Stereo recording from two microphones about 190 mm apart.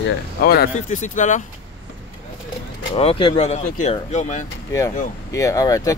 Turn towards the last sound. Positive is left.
turn(degrees=15)  # may be behind; listen again after turning